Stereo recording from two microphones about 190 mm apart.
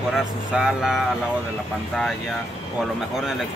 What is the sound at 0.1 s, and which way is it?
Speech, 5° right (ahead or behind).